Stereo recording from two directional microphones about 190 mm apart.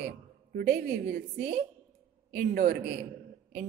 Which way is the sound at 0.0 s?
55° right (ahead or behind).